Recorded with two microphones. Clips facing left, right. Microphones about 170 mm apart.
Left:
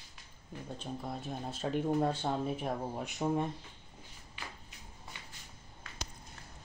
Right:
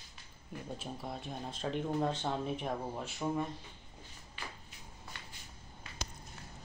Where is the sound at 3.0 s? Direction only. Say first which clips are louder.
Left 4 dB; 20° left (ahead or behind).